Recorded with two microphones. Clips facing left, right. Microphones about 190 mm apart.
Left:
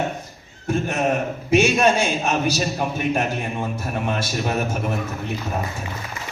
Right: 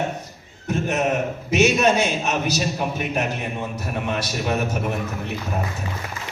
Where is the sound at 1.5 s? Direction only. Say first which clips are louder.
Left 1 dB; 55° left (ahead or behind).